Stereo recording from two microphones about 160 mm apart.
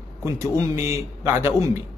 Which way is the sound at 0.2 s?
20° right (ahead or behind).